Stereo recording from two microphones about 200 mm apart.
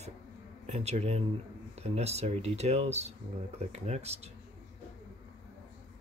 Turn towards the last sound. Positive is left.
turn(degrees=-30)  # may be behind; listen again after turning